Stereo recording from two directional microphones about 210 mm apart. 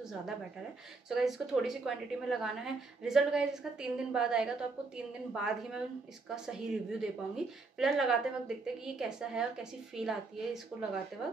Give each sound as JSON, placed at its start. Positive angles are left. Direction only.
{"t": 1.0, "sound": "a woman's voice", "side_deg": 0}